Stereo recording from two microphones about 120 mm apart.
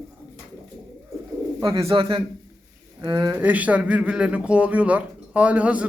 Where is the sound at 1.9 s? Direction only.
45° right (ahead or behind).